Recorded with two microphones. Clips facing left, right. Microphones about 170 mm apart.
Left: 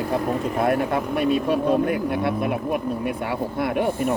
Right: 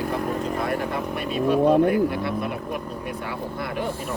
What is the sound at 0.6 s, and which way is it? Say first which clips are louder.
Speech: left 5 dB; 55° left (ahead or behind).